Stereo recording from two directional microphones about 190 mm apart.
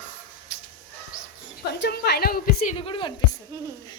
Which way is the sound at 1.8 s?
60° left (ahead or behind).